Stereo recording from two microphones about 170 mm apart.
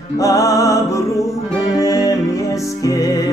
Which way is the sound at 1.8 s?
20° left (ahead or behind).